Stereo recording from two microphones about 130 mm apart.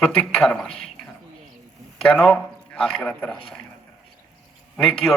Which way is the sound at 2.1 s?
10° left (ahead or behind).